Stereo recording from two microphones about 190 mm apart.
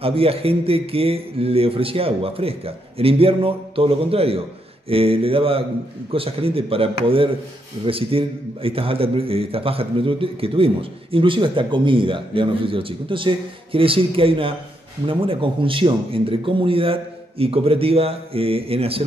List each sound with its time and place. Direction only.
0.0 s a man's voice: 30° right (ahead or behind)